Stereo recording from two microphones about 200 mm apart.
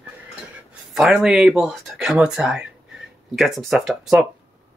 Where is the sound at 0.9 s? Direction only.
Centre (ahead or behind).